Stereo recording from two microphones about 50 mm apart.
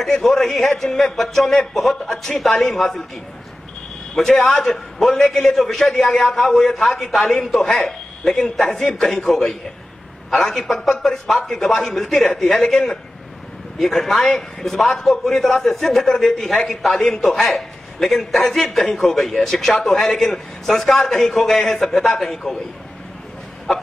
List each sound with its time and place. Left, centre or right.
0.0 s a man's voice: centre
4.1 s a man's voice: centre